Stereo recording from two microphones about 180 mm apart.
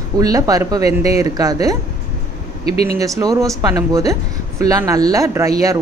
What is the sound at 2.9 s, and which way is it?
Speech, 20° right (ahead or behind).